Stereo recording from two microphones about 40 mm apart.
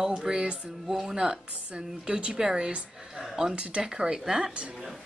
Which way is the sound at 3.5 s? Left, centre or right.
Right.